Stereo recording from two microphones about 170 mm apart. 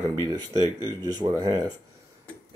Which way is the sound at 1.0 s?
25° right (ahead or behind).